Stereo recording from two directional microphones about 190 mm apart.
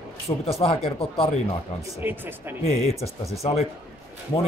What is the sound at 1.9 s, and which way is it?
Speech, 10° right (ahead or behind).